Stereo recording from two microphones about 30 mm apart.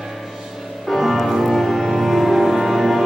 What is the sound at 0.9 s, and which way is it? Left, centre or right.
Music, centre.